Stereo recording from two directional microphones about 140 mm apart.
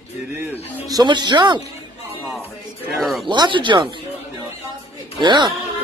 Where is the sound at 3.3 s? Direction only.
35° right (ahead or behind).